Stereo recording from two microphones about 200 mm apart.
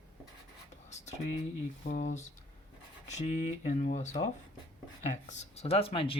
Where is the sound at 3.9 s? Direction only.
35° left (ahead or behind).